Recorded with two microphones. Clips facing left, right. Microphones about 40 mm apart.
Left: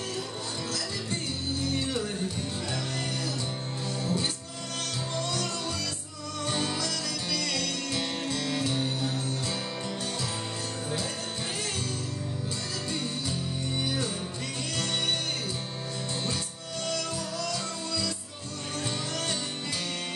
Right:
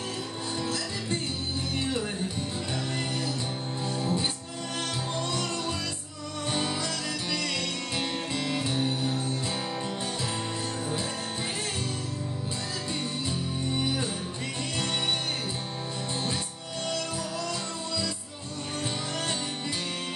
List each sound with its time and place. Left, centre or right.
0.6 s music: right
4.0 s music: right